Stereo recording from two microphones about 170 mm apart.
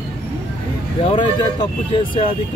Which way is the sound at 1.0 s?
30° left (ahead or behind).